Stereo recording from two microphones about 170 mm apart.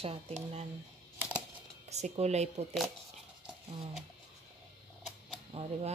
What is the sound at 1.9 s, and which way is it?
Speech, 40° right (ahead or behind).